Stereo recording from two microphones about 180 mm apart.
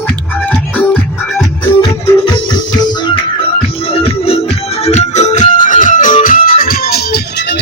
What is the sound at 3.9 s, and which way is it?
Music, 35° left (ahead or behind).